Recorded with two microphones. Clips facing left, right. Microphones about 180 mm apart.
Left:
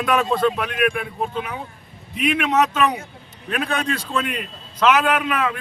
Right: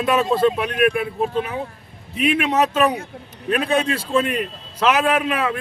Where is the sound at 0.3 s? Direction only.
5° right (ahead or behind).